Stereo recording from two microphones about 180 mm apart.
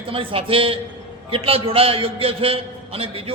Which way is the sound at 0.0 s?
30° right (ahead or behind).